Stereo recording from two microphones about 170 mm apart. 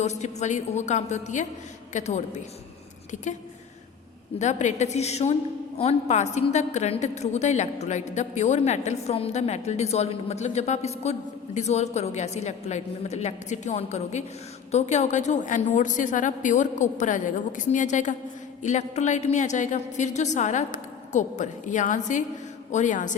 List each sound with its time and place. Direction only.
0.0 s a woman's voice: 40° left (ahead or behind)
4.4 s a woman's voice: 45° left (ahead or behind)